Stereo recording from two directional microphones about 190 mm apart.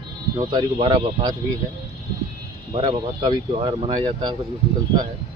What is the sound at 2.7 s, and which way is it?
Speech, 25° right (ahead or behind).